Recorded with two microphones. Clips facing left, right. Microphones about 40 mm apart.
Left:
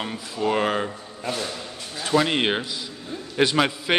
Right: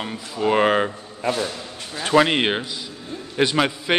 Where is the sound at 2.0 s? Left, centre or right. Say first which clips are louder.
Right 4 dB; right.